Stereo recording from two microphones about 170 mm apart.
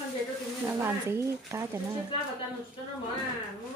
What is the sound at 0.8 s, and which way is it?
Speech, 15° right (ahead or behind).